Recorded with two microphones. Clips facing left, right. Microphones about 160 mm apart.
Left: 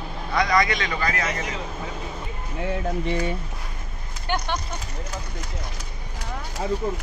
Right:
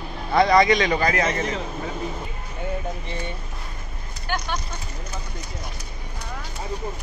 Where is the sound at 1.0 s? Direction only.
35° right (ahead or behind).